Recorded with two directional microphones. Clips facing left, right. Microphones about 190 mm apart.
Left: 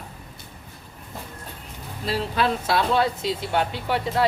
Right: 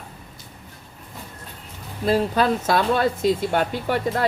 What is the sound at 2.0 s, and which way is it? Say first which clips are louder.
Speech: right 5 dB; 45° right (ahead or behind).